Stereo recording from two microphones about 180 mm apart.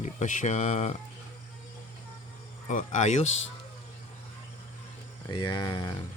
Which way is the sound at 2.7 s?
45° left (ahead or behind).